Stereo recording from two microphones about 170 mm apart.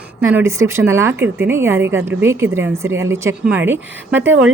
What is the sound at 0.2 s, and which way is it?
A woman's voice, 15° right (ahead or behind).